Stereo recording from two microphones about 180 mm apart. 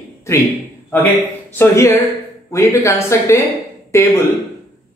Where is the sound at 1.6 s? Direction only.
15° left (ahead or behind).